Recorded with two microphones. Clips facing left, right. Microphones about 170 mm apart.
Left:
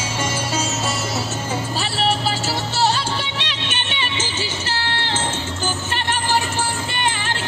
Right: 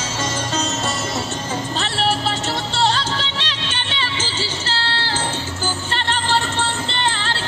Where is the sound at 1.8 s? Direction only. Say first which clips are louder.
Even; 5° left (ahead or behind).